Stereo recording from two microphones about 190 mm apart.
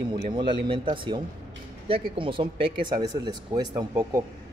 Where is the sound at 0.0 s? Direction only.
25° right (ahead or behind).